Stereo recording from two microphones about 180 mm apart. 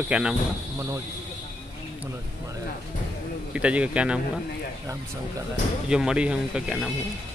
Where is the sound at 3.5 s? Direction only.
5° right (ahead or behind).